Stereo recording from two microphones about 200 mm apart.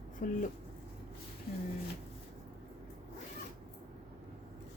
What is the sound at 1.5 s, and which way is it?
Speech, 50° left (ahead or behind).